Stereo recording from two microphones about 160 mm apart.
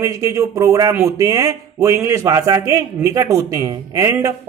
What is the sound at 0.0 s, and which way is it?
Speech, 20° right (ahead or behind).